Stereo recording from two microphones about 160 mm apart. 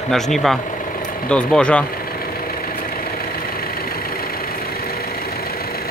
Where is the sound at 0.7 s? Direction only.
55° left (ahead or behind).